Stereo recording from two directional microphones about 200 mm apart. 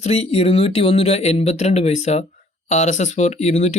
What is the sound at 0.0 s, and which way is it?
Speech, 30° left (ahead or behind).